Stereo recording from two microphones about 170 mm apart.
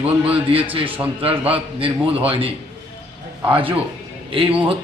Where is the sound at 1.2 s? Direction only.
35° right (ahead or behind).